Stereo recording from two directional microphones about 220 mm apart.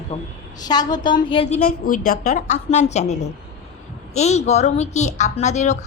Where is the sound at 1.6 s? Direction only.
40° left (ahead or behind).